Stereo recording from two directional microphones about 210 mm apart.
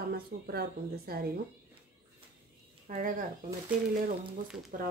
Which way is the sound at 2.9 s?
40° right (ahead or behind).